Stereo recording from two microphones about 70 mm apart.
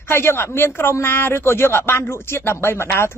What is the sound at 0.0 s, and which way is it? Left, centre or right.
Speech, left.